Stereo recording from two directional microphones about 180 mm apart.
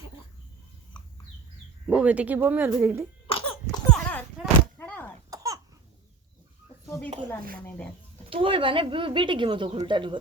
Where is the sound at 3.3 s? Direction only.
30° left (ahead or behind).